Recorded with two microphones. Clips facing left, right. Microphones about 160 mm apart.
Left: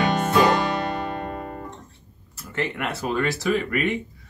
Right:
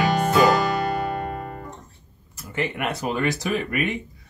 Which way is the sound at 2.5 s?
15° right (ahead or behind).